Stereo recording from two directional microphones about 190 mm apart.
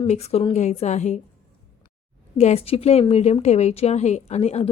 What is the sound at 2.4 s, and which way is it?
A woman's voice, 35° left (ahead or behind).